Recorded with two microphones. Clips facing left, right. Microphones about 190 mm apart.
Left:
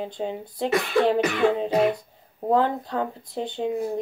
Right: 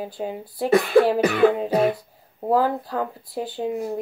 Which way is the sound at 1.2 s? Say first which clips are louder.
Right 4 dB; 35° right (ahead or behind).